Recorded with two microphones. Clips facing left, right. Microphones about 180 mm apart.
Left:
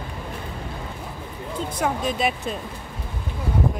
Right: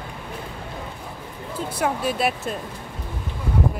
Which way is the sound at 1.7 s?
5° right (ahead or behind).